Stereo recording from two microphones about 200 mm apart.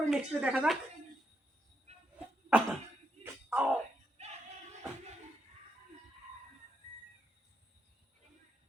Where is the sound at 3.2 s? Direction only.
10° right (ahead or behind).